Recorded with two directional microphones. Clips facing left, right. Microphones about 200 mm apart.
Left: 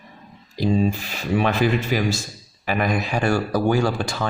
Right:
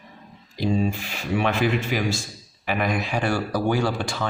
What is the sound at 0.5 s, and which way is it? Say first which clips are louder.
Speech: left 3 dB; 40° left (ahead or behind).